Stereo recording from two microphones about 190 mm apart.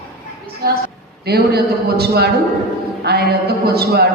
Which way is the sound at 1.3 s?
55° right (ahead or behind).